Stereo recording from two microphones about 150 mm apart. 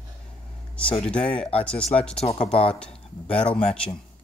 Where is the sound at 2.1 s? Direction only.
45° left (ahead or behind).